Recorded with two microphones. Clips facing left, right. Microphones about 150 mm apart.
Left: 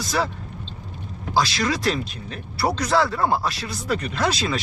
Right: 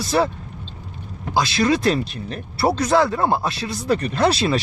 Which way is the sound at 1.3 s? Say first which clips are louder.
Right 4 dB; 25° right (ahead or behind).